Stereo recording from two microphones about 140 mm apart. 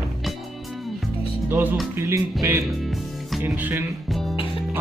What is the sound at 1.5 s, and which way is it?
Music, 15° right (ahead or behind).